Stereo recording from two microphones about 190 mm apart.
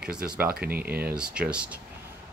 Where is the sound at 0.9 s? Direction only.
50° right (ahead or behind).